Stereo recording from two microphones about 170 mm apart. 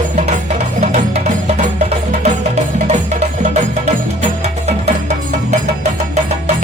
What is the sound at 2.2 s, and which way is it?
Music, 40° right (ahead or behind).